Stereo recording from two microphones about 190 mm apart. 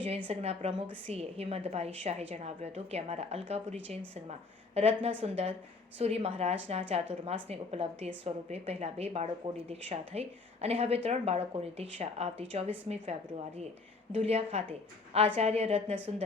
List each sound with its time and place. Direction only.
0.3 s a woman's voice: 30° right (ahead or behind)